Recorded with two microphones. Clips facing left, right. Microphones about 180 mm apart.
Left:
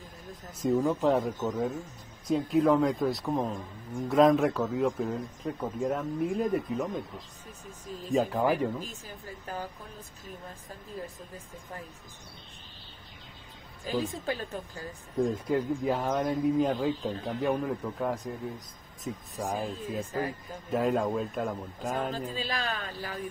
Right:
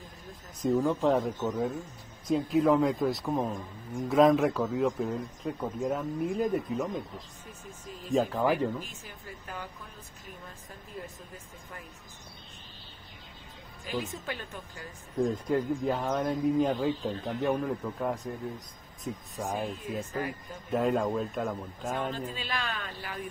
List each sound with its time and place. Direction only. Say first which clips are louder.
0.6 s speech: even; centre (ahead or behind)
8.3 s speech: even; 10° left (ahead or behind)
8.7 s speech: left 1 dB; 35° left (ahead or behind)
13.8 s speech: left 4 dB; 35° left (ahead or behind)
15.1 s speech: even; centre (ahead or behind)
22.1 s speech: left 2 dB; 35° left (ahead or behind)